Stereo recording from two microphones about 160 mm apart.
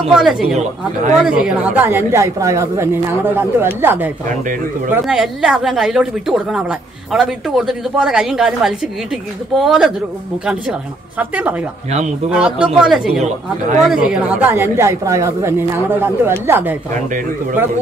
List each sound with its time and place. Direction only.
0.1 s a woman's voice: 5° right (ahead or behind)
5.0 s a woman's voice: centre (ahead or behind)